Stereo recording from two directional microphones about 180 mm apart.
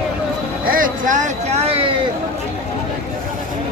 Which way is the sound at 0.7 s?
50° right (ahead or behind).